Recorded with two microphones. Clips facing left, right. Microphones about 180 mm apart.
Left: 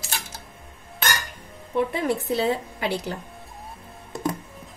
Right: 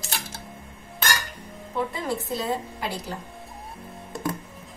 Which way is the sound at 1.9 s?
70° left (ahead or behind).